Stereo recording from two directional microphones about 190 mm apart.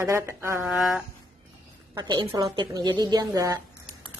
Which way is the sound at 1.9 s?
20° right (ahead or behind).